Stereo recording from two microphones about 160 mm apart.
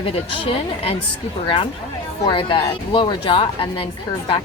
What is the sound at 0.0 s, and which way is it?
Speech, 35° left (ahead or behind).